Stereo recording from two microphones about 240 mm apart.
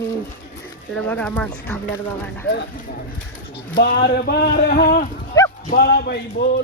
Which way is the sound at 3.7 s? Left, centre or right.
Left.